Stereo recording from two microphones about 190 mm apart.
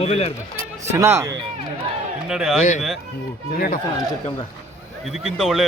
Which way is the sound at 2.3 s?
5° right (ahead or behind).